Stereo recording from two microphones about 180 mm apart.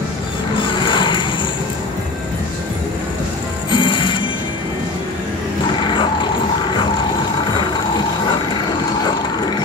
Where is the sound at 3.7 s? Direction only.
25° left (ahead or behind).